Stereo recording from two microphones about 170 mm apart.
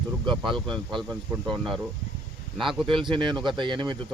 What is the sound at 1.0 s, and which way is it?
Speech, centre (ahead or behind).